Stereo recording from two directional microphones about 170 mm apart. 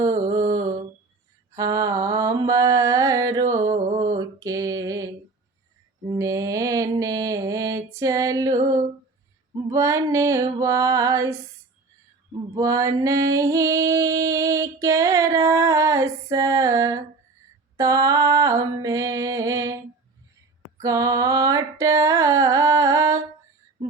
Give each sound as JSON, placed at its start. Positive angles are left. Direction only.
{"t": 0.0, "sound": "mantra", "side_deg": -20}
{"t": 0.3, "sound": "mantra", "side_deg": -45}
{"t": 1.5, "sound": "mantra", "side_deg": -20}
{"t": 3.5, "sound": "a sound", "side_deg": -20}
{"t": 4.2, "sound": "mantra", "side_deg": -20}
{"t": 6.1, "sound": "mantra", "side_deg": -20}
{"t": 9.6, "sound": "music", "side_deg": -20}
{"t": 12.5, "sound": "a sound", "side_deg": -20}
{"t": 20.7, "sound": "music", "side_deg": -20}